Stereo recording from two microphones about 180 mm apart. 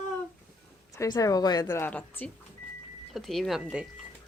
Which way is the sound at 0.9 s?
20° left (ahead or behind).